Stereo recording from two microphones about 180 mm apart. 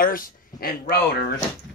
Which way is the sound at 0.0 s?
55° left (ahead or behind).